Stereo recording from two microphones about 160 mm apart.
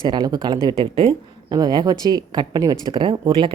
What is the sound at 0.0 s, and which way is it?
Speech, 25° right (ahead or behind).